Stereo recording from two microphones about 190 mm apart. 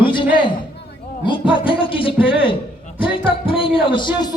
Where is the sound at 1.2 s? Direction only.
25° left (ahead or behind).